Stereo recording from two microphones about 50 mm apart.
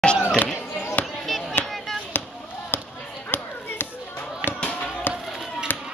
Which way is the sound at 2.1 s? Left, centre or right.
Left.